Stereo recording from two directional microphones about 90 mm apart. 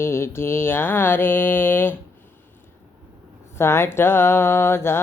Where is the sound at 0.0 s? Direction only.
30° left (ahead or behind).